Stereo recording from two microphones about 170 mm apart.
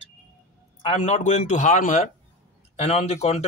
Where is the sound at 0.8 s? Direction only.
40° left (ahead or behind).